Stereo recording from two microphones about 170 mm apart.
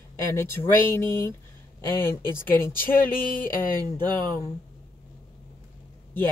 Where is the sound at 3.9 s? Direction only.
25° right (ahead or behind).